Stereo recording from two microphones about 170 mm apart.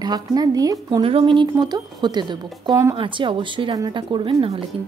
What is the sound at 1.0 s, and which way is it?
A woman's voice, 30° right (ahead or behind).